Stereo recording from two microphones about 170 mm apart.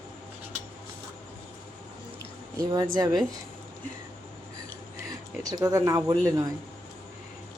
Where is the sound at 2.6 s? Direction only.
25° right (ahead or behind).